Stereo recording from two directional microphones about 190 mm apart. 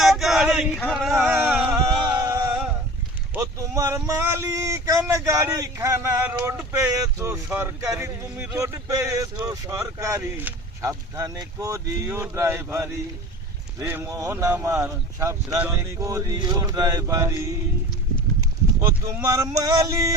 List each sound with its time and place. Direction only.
0.0 s male singing: centre (ahead or behind)
1.1 s a sound: 10° right (ahead or behind)
3.3 s speech: 15° right (ahead or behind)
18.8 s speech: 15° right (ahead or behind)